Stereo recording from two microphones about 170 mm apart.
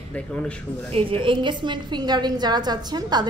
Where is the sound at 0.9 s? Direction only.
35° right (ahead or behind).